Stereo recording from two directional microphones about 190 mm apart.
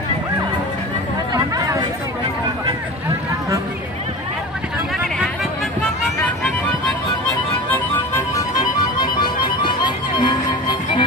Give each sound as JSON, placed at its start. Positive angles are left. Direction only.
{"t": 1.3, "sound": "chatter", "side_deg": -15}
{"t": 7.7, "sound": "music", "side_deg": 10}